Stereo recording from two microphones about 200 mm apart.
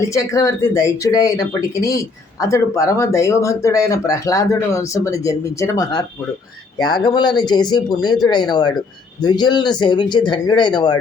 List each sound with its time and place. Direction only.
0.1 s speech: 15° left (ahead or behind)